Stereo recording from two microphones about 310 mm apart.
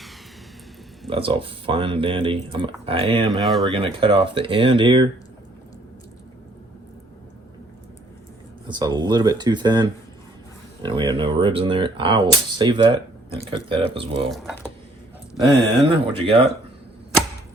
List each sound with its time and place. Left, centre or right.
1.1 s speech: centre
3.4 s speech: centre
3.7 s speech: centre
8.6 s speech: centre
14.3 s speech: centre
15.9 s speech: centre